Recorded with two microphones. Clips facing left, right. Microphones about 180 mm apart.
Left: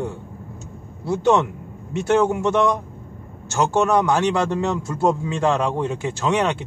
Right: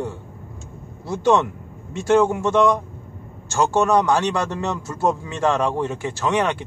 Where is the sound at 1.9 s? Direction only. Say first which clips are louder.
Right 1 dB; 15° left (ahead or behind).